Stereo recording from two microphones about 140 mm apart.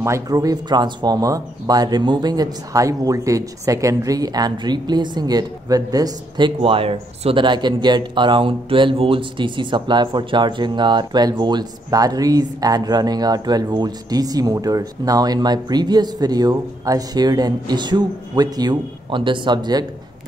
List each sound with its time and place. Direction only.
0.0 s speech: 25° right (ahead or behind)